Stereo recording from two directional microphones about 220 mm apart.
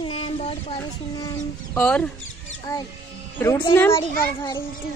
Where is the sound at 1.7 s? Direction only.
5° left (ahead or behind).